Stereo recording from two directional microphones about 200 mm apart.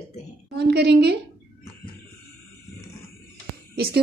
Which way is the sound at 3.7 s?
50° right (ahead or behind).